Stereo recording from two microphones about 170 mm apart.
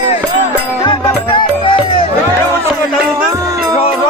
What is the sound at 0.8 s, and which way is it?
Music, 30° left (ahead or behind).